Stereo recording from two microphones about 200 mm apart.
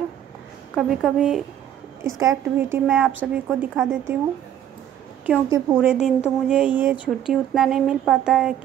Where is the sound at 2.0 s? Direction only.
15° right (ahead or behind).